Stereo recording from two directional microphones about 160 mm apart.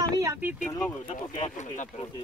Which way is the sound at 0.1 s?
20° right (ahead or behind).